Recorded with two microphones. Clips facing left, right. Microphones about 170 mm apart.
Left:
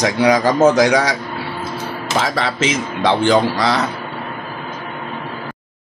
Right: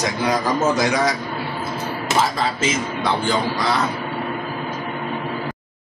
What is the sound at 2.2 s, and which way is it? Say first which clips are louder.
Speech: left 2 dB; 80° left.